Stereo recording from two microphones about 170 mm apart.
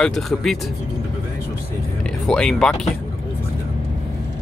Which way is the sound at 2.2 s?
5° left (ahead or behind).